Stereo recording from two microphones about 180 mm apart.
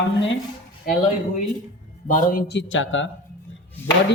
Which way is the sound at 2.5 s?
85° left.